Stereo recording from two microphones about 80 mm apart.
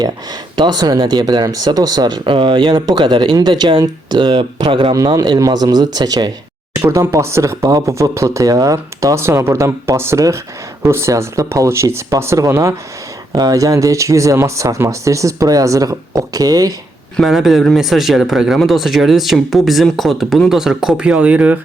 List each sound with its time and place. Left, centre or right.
0.5 s speech: right
2.8 s speech: right
3.3 s speech: right
5.4 s speech: right
6.7 s speech: right
13.3 s speech: right
17.2 s speech: centre